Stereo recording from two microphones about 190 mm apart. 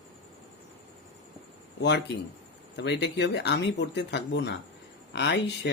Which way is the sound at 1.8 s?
65° left (ahead or behind).